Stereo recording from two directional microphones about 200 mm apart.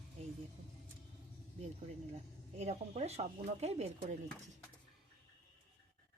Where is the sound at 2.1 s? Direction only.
30° right (ahead or behind).